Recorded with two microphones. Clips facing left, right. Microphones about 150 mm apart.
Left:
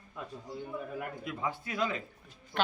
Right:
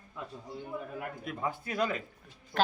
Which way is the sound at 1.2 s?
45° right (ahead or behind).